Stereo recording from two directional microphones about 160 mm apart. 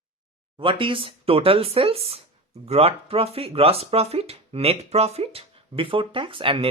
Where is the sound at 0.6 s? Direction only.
35° right (ahead or behind).